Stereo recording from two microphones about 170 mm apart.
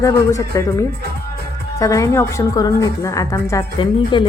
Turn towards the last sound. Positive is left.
turn(degrees=25)  # may be behind; listen again after turning